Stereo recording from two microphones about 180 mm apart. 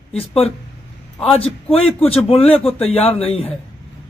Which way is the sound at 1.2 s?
35° left (ahead or behind).